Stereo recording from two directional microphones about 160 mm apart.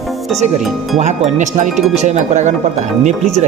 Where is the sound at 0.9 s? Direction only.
45° right (ahead or behind).